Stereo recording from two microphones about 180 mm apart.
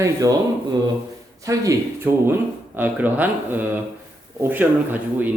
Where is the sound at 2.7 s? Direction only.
10° right (ahead or behind).